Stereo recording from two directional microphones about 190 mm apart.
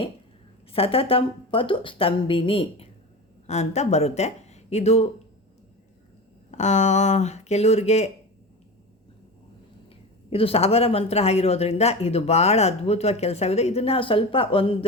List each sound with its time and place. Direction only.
0.7 s a woman's voice: 30° left (ahead or behind)
6.5 s speech: 35° left (ahead or behind)
9.9 s speech: 30° left (ahead or behind)